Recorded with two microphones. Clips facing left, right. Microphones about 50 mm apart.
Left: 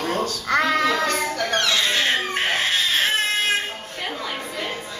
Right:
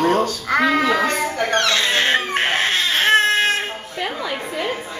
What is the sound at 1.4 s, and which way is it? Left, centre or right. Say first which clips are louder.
Crying: right 4 dB; right.